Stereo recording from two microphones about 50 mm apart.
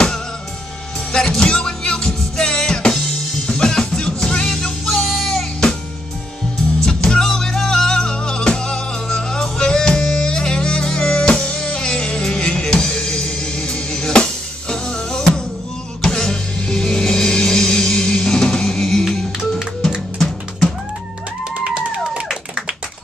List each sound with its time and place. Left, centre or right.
1.1 s music: centre
6.8 s music: centre